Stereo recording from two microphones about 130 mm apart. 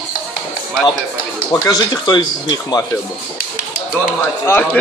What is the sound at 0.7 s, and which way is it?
Speech, centre (ahead or behind).